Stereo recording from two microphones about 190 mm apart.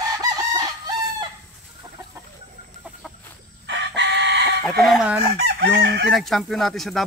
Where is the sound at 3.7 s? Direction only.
65° right (ahead or behind).